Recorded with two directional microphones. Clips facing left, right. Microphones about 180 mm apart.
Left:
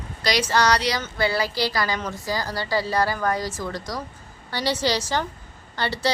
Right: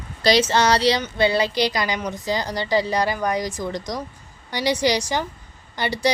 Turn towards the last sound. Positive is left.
turn(degrees=-15)  # may be behind; listen again after turning